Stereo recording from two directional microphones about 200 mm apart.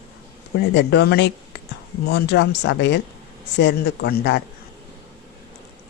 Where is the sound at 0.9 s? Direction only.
55° left (ahead or behind).